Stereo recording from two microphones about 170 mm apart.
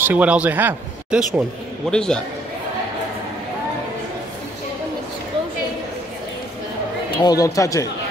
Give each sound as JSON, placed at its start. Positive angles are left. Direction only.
{"t": 0.0, "sound": "speech", "side_deg": -10}
{"t": 1.9, "sound": "a man's voice", "side_deg": 5}
{"t": 7.1, "sound": "speech", "side_deg": 20}